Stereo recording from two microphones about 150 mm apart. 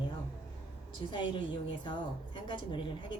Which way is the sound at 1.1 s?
30° left (ahead or behind).